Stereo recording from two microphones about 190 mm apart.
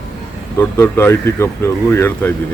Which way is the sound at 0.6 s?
10° left (ahead or behind).